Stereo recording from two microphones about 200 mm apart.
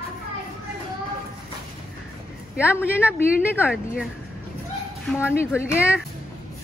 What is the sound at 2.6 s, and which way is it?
Speech, 10° left (ahead or behind).